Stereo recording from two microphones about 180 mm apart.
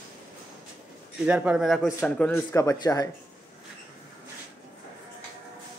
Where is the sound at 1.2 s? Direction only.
5° right (ahead or behind); by 3.0 s 20° left (ahead or behind).